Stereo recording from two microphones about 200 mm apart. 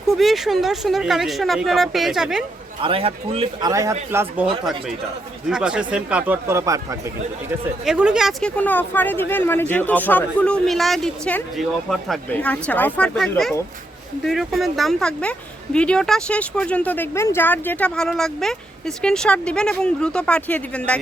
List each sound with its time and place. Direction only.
0.1 s speech: centre (ahead or behind)
2.8 s a man's voice: 30° right (ahead or behind)
3.7 s speech: 15° right (ahead or behind)
7.9 s speech: 5° right (ahead or behind)